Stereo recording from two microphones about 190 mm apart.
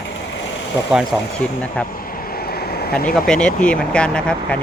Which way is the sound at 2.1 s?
50° left (ahead or behind).